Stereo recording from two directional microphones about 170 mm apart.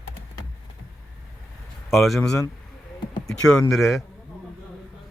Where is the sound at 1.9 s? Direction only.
Centre (ahead or behind).